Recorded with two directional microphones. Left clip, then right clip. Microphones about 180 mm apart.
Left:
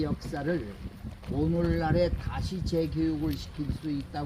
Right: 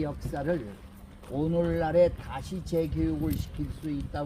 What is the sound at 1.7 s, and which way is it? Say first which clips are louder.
Speech: right 8 dB; 15° left (ahead or behind).